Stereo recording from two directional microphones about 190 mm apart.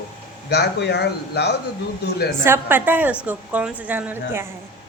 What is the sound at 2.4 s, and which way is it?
Speech, 10° right (ahead or behind).